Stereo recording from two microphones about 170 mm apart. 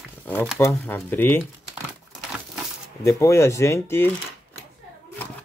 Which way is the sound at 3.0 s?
15° left (ahead or behind).